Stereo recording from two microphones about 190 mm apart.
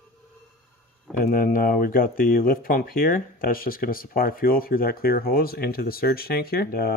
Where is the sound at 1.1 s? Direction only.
50° left (ahead or behind).